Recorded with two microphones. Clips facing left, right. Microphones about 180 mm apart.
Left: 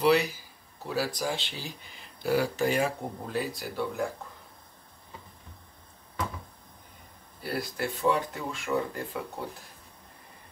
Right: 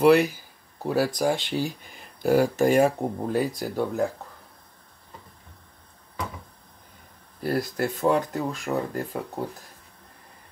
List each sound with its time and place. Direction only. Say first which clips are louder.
0.0 s speech: right 6 dB; 50° right (ahead or behind)
7.4 s speech: right 6 dB; 45° right (ahead or behind)